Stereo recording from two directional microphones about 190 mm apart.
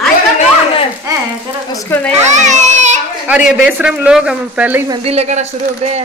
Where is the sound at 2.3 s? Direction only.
40° right (ahead or behind).